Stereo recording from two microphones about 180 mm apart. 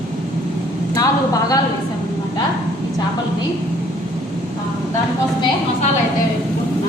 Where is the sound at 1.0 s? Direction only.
20° left (ahead or behind).